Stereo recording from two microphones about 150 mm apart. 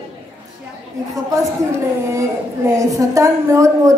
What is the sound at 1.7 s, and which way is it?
A woman's voice, 20° right (ahead or behind).